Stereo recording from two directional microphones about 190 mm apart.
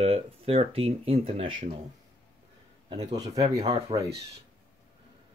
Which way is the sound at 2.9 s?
20° right (ahead or behind).